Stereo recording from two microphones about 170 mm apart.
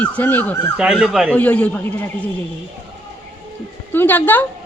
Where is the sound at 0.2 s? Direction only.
10° left (ahead or behind).